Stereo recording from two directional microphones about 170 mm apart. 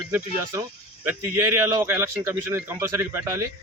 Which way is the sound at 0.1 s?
15° right (ahead or behind).